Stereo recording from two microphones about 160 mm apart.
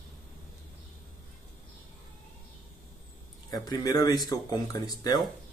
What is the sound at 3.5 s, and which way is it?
Speech, 25° left (ahead or behind).